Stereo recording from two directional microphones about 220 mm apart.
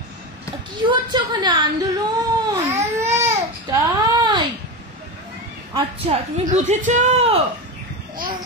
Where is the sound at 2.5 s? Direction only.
15° right (ahead or behind).